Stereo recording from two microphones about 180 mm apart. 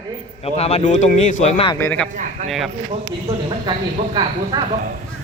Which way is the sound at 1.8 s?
10° left (ahead or behind).